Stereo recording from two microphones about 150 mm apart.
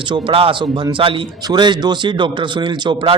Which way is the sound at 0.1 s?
35° right (ahead or behind).